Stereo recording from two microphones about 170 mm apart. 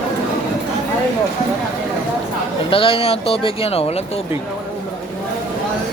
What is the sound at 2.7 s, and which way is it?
Speech, 35° left (ahead or behind).